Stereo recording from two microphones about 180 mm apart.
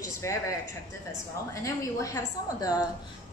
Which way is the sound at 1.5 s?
15° left (ahead or behind).